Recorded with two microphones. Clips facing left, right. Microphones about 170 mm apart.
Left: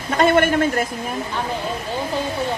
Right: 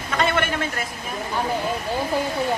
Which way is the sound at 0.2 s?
45° left (ahead or behind).